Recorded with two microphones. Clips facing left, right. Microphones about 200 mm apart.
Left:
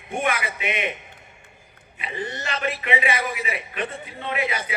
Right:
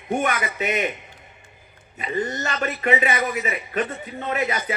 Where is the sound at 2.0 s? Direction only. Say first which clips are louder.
Right 5 dB; 40° right (ahead or behind).